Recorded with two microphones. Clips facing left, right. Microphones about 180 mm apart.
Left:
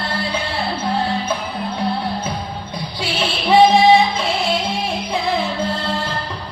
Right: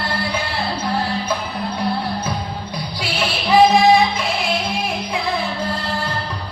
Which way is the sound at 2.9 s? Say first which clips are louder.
Left 1 dB; 25° left (ahead or behind).